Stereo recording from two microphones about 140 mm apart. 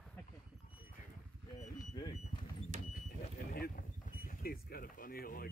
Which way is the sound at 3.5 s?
90° left.